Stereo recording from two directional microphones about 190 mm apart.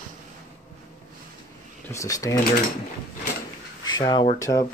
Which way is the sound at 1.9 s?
15° left (ahead or behind).